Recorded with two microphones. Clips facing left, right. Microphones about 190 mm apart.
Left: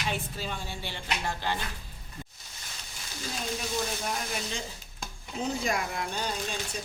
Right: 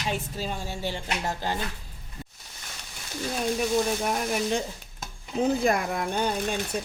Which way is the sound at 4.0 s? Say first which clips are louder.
Right 7 dB; 50° right (ahead or behind).